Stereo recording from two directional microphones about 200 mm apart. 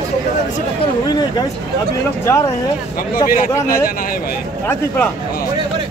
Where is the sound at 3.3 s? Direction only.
45° left (ahead or behind).